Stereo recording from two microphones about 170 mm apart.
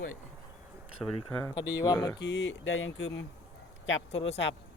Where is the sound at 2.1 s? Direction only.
90° left.